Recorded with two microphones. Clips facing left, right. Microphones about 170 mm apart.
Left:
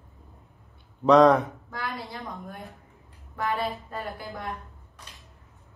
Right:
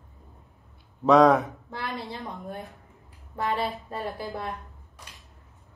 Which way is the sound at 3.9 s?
30° right (ahead or behind).